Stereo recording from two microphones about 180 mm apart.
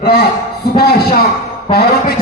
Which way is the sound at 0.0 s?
55° left (ahead or behind).